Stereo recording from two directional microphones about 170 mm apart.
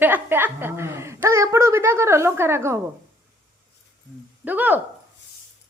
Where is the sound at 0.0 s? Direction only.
10° right (ahead or behind).